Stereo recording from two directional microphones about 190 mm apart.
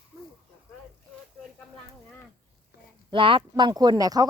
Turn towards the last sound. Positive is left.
turn(degrees=-20)  # may be behind; listen again after turning